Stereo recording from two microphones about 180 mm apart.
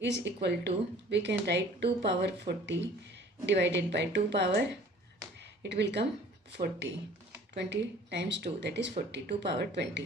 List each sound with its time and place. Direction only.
0.0 s speech: 75° right (ahead or behind)